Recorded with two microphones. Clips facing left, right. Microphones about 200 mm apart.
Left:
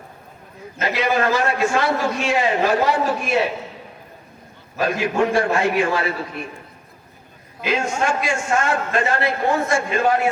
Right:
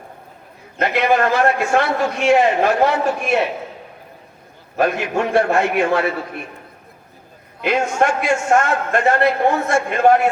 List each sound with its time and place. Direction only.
0.8 s a man's voice: 60° right (ahead or behind)
4.8 s a man's voice: 60° right (ahead or behind)
7.6 s a man's voice: 60° right (ahead or behind)